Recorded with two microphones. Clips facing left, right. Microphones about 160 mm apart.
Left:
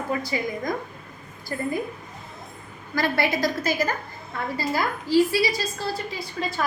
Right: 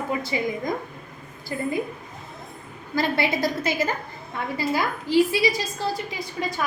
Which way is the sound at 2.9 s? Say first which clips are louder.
Even; 20° right (ahead or behind).